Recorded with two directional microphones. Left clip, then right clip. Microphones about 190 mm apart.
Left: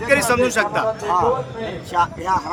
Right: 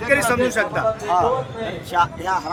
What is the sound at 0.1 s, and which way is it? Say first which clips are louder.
Speech: left 1 dB; 50° left (ahead or behind).